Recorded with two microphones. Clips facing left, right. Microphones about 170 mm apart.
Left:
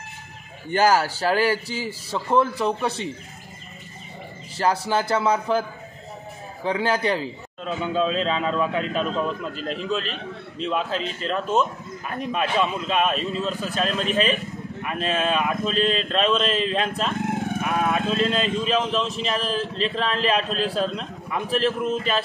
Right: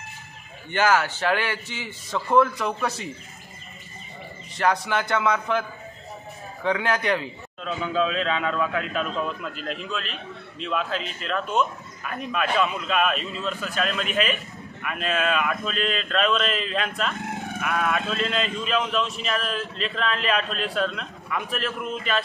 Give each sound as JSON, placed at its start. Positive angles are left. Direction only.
{"t": 0.7, "sound": "speech", "side_deg": 35}
{"t": 4.6, "sound": "speech", "side_deg": 30}